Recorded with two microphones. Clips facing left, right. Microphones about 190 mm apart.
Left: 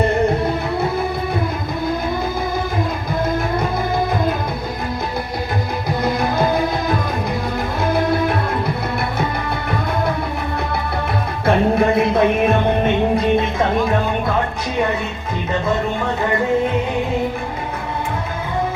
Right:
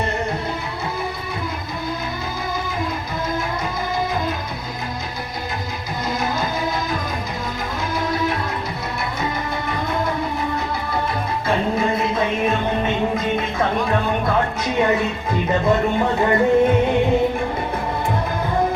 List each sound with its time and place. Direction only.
11.4 s music: 60° left (ahead or behind)